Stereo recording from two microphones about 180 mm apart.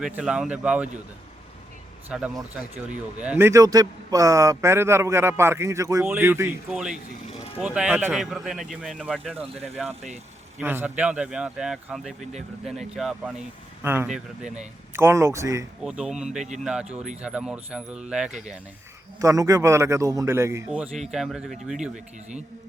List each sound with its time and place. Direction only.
0.0 s speech: 5° right (ahead or behind)
2.0 s speech: 5° right (ahead or behind)
10.6 s speech: 10° right (ahead or behind)
15.8 s speech: 5° right (ahead or behind)
19.2 s speech: 20° right (ahead or behind)
20.7 s speech: 5° right (ahead or behind)